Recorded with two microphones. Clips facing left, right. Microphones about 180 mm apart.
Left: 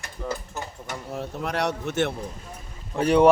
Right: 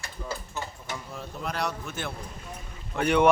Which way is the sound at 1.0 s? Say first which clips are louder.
Left 7 dB; 70° left (ahead or behind).